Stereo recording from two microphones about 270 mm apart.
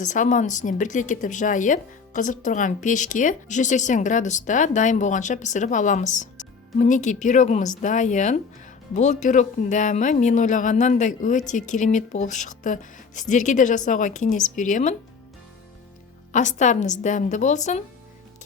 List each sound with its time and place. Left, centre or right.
0.0 s speech: left
16.3 s speech: left